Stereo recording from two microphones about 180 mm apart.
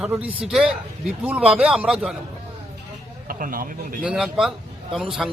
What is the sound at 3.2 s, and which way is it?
Speech, 50° right (ahead or behind).